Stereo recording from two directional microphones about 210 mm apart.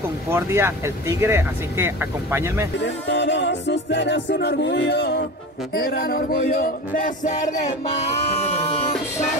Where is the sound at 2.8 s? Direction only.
60° left (ahead or behind); by 9.0 s 30° left (ahead or behind).